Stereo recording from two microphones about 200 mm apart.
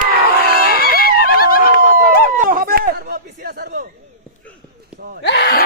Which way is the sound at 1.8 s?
35° right (ahead or behind).